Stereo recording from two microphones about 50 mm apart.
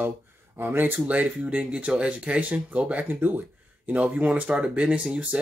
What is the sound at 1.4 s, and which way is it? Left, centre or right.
Speech, right.